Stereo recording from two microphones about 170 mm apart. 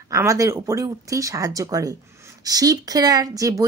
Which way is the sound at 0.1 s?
15° right (ahead or behind).